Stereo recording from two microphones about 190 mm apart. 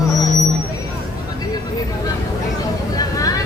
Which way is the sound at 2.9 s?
20° left (ahead or behind).